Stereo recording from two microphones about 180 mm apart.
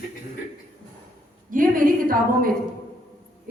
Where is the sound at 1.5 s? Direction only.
50° right (ahead or behind).